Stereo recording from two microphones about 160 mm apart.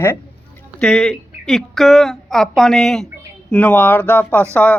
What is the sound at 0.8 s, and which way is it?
Speech, 5° left (ahead or behind).